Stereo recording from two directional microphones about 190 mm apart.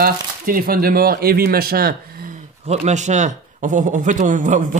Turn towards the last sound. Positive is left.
turn(degrees=-40)  # may be behind; listen again after turning